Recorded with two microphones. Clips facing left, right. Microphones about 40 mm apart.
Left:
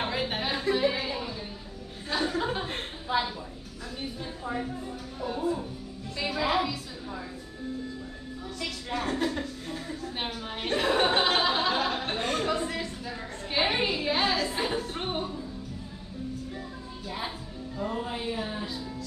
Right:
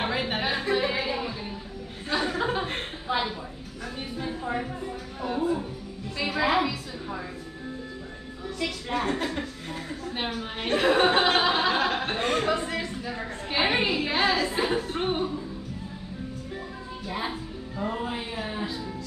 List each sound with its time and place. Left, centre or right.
0.1 s music: centre
2.0 s chuckle: centre
4.2 s a woman's voice: right
6.1 s music: centre
8.5 s a sound: centre
9.1 s speech: right
11.5 s chuckle: right
13.5 s a sound: centre
14.7 s music: centre
17.7 s a sound: right